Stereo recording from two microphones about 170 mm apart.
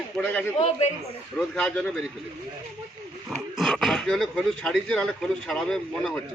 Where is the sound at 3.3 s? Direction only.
Centre (ahead or behind).